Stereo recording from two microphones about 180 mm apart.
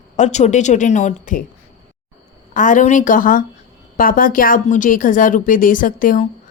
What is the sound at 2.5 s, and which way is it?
A woman's voice, 45° left (ahead or behind).